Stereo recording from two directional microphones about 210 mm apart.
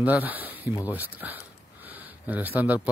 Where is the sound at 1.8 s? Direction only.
10° right (ahead or behind).